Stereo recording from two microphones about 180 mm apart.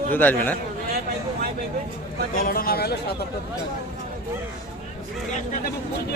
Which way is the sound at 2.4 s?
55° left (ahead or behind).